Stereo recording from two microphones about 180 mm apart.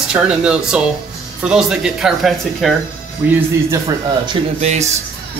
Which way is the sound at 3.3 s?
15° right (ahead or behind).